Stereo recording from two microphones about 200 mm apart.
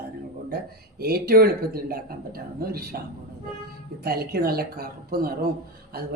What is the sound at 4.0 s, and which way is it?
Speech, 50° right (ahead or behind).